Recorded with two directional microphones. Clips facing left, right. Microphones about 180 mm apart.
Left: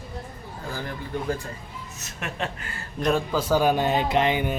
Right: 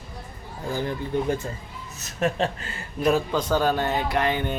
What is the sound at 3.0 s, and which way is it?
Speech, centre (ahead or behind).